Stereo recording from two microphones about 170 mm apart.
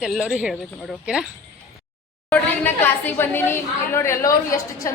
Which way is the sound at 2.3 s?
10° left (ahead or behind).